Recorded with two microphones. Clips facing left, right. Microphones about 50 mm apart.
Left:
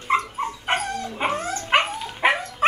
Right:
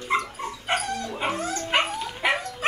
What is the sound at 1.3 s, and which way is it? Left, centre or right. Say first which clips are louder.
Dog: left 1 dB; left.